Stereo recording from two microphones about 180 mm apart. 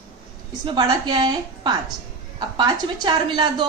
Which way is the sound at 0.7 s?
25° right (ahead or behind).